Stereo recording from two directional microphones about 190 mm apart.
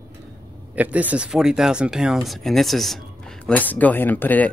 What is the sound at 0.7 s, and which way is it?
Speech, 10° right (ahead or behind).